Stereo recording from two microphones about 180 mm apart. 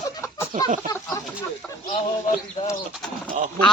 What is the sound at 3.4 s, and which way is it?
Speech, 40° right (ahead or behind).